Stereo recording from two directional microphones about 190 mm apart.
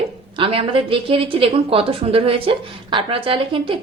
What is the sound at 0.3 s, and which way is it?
Speech, 30° right (ahead or behind).